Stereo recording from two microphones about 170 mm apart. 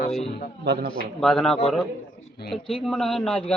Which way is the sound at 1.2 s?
5° left (ahead or behind).